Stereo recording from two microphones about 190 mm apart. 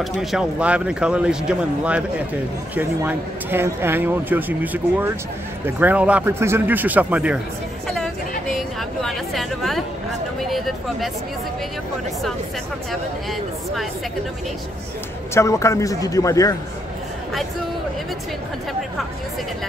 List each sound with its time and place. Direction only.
0.0 s a man's voice: centre (ahead or behind)
8.5 s a sound: centre (ahead or behind)
15.3 s a man's voice: 15° left (ahead or behind)